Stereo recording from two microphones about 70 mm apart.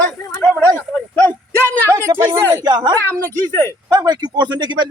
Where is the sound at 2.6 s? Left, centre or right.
Right.